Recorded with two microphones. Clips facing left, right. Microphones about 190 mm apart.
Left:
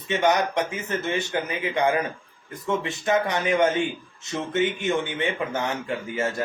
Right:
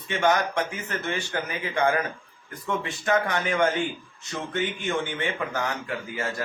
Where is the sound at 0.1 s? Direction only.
20° left (ahead or behind).